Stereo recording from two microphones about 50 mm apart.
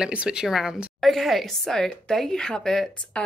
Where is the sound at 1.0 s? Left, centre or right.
Centre.